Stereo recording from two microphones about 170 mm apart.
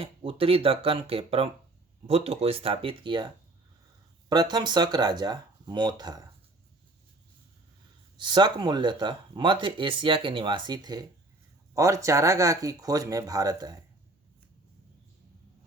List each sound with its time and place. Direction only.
0.0 s speech: 35° right (ahead or behind)
8.2 s speech: 25° right (ahead or behind)